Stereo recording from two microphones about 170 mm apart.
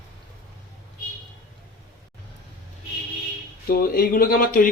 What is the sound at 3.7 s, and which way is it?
Speech, 60° left (ahead or behind).